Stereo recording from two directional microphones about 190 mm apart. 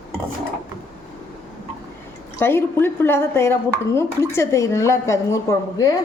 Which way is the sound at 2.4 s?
10° left (ahead or behind).